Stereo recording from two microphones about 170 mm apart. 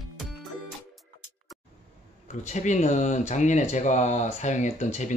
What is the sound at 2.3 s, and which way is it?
Speech, 45° left (ahead or behind).